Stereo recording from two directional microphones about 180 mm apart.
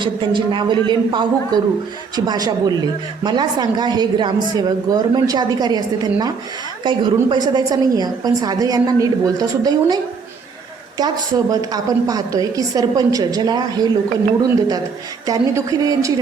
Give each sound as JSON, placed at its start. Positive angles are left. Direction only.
{"t": 0.0, "sound": "a woman's voice", "side_deg": -25}
{"t": 15.3, "sound": "a woman's voice", "side_deg": -20}